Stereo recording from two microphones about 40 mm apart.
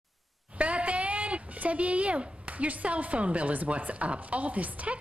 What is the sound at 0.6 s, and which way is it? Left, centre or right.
A woman's voice, right.